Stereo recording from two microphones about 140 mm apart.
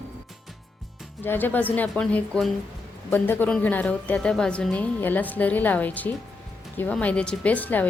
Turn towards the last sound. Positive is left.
turn(degrees=10)  # may be behind; listen again after turning